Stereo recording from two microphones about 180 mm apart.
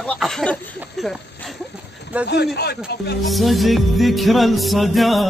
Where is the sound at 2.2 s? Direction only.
65° left (ahead or behind).